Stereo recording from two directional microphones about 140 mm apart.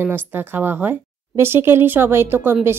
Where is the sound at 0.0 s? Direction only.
15° right (ahead or behind).